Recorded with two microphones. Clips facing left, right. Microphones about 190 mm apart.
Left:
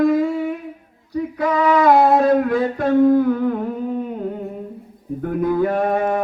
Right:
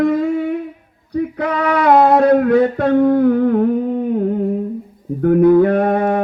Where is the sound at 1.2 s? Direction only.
60° right (ahead or behind).